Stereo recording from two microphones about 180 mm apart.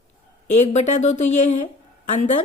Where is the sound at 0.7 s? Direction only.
40° left (ahead or behind).